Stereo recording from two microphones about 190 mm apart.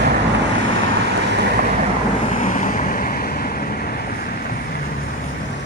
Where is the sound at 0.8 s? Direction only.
65° right (ahead or behind).